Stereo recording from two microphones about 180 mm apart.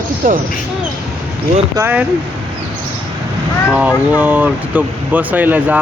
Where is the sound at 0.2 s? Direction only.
50° right (ahead or behind).